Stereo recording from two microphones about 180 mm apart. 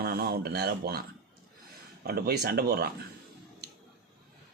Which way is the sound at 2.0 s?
60° right (ahead or behind).